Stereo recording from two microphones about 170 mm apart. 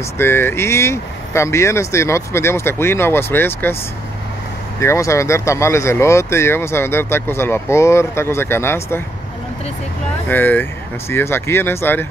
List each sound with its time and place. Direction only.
0.2 s speech: 15° left (ahead or behind)
4.7 s speech: 15° left (ahead or behind)
10.2 s speech: 10° left (ahead or behind)